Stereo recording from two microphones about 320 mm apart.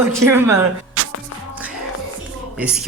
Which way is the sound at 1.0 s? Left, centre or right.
Right.